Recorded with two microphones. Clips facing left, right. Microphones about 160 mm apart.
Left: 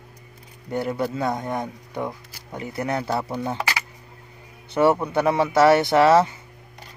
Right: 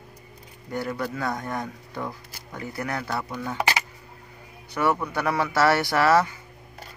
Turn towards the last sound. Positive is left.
turn(degrees=20)  # may be behind; listen again after turning